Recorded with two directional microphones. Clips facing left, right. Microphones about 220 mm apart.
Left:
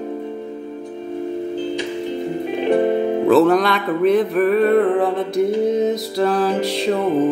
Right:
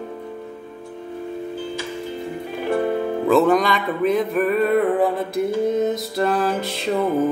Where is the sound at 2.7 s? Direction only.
20° left (ahead or behind).